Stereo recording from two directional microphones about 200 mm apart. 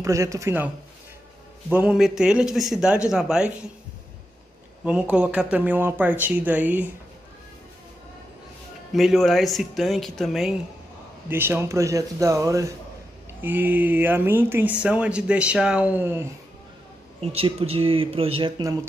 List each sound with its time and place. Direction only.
0.0 s speech: 15° right (ahead or behind)
1.7 s a man's voice: 5° right (ahead or behind)
5.1 s speech: 5° right (ahead or behind)
8.9 s a man's voice: centre (ahead or behind)
11.2 s speech: 10° right (ahead or behind)
17.2 s speech: 30° right (ahead or behind)